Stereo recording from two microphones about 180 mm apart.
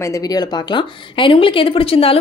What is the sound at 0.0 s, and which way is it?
Speech, 20° left (ahead or behind).